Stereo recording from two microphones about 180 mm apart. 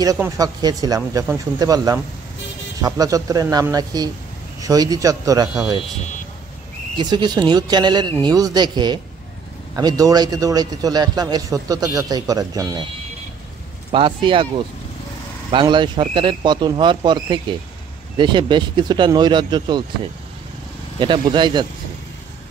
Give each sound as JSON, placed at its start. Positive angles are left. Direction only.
{"t": 0.0, "sound": "a man's voice", "side_deg": -20}
{"t": 7.0, "sound": "a man's voice", "side_deg": -25}
{"t": 13.9, "sound": "a man's voice", "side_deg": -30}
{"t": 15.5, "sound": "a man's voice", "side_deg": -25}
{"t": 21.0, "sound": "a man's voice", "side_deg": -25}